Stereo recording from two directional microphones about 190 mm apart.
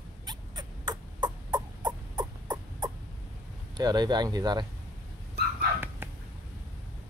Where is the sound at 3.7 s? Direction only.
20° right (ahead or behind).